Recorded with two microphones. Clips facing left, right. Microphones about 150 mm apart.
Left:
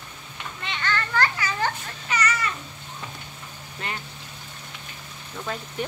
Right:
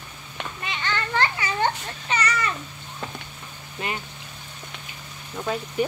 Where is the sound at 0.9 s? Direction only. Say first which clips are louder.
Right 1 dB; 25° right (ahead or behind).